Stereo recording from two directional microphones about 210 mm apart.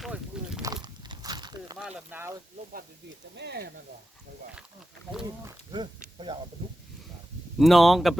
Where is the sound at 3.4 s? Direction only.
50° right (ahead or behind).